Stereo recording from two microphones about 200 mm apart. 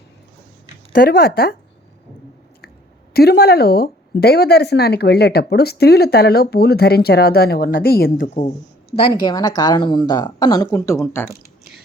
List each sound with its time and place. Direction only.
1.0 s a woman's voice: 50° left (ahead or behind)
3.1 s a woman's voice: 50° left (ahead or behind)
9.2 s speech: 20° left (ahead or behind)